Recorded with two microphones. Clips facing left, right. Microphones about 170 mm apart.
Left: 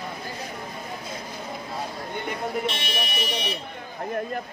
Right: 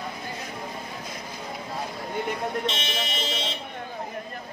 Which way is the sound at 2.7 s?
20° right (ahead or behind).